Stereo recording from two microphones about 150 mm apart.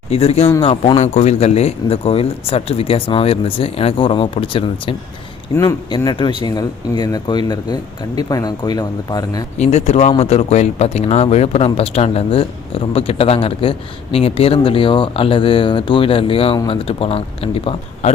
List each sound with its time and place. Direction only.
0.1 s speech: 45° left (ahead or behind)
5.5 s speech: 25° left (ahead or behind)
9.6 s speech: 45° left (ahead or behind)